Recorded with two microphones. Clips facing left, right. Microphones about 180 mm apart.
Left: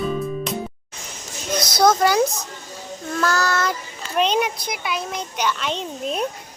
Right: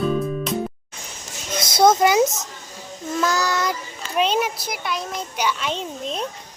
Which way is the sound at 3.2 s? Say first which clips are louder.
Left 1 dB; 15° right (ahead or behind).